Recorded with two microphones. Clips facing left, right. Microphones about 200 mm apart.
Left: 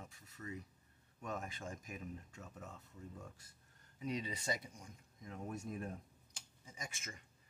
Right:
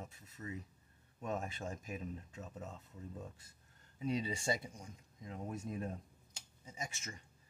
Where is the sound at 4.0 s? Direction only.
30° right (ahead or behind).